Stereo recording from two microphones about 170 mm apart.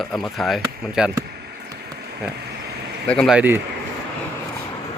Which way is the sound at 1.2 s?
75° right (ahead or behind).